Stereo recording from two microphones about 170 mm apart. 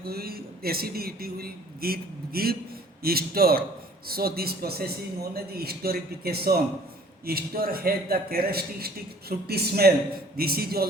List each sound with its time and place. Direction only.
0.0 s a man's voice: 65° right (ahead or behind)